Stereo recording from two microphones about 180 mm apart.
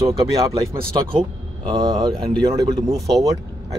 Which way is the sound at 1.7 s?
25° right (ahead or behind).